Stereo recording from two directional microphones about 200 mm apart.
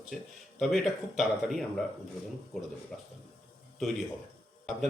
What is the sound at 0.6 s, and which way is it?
Speech, centre (ahead or behind).